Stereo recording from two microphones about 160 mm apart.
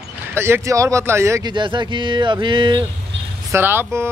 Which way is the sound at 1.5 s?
30° right (ahead or behind).